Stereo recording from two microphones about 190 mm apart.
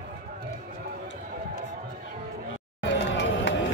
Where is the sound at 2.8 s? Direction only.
70° left (ahead or behind).